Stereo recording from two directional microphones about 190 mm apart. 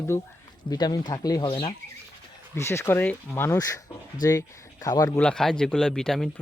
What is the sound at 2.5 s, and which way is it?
A man's voice, 15° left (ahead or behind).